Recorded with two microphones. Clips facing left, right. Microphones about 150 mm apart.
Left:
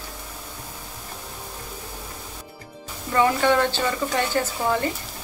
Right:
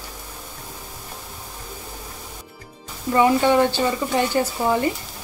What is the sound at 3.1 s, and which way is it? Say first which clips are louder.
Speech: right 3 dB; 15° right (ahead or behind).